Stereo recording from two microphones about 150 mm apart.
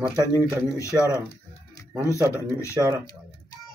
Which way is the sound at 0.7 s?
20° left (ahead or behind).